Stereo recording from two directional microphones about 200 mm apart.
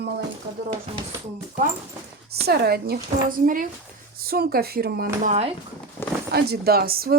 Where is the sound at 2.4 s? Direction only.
50° right (ahead or behind).